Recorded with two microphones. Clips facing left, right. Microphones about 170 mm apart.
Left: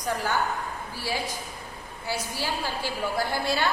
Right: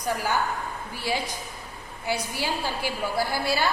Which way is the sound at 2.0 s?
15° right (ahead or behind).